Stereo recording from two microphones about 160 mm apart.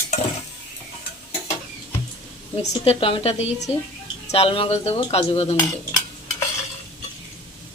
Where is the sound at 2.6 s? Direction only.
40° left (ahead or behind).